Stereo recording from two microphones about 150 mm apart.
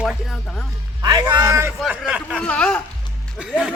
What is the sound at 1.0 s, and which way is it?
Speech, 30° right (ahead or behind).